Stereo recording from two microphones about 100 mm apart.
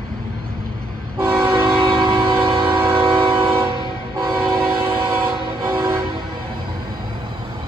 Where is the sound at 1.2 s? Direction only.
25° right (ahead or behind).